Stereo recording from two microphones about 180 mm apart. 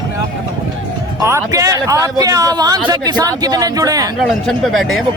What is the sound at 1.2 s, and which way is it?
A man's voice, 15° right (ahead or behind).